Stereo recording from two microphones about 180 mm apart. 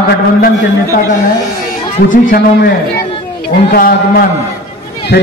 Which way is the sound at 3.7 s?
55° left (ahead or behind).